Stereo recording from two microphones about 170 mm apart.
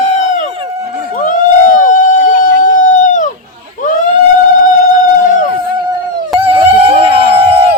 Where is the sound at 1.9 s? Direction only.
45° left (ahead or behind).